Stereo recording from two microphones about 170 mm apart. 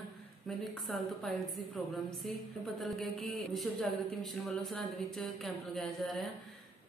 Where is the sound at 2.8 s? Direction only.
Centre (ahead or behind).